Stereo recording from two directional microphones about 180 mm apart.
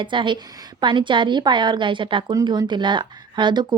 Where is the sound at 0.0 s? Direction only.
25° right (ahead or behind).